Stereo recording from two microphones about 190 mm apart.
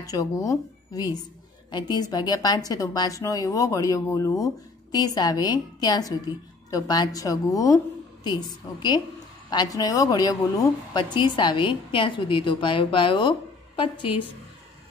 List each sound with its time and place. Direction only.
0.0 s a woman's voice: 20° left (ahead or behind)